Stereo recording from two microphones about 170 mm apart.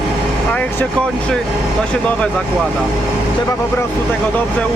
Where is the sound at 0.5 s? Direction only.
10° left (ahead or behind).